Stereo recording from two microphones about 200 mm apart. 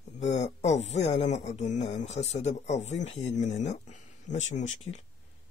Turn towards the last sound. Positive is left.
turn(degrees=35)  # may be behind; listen again after turning